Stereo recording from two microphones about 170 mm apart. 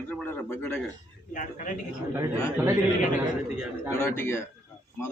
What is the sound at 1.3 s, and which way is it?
Speech, 50° left (ahead or behind).